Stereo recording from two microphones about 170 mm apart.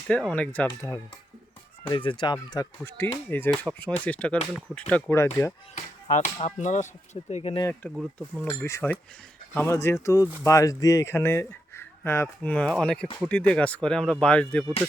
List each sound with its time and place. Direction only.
0.1 s speech: 5° left (ahead or behind)
0.7 s speech: 20° left (ahead or behind)
6.1 s speech: 45° left (ahead or behind)
7.6 s speech: 10° left (ahead or behind)